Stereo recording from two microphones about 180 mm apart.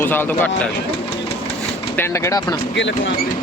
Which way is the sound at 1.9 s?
15° left (ahead or behind).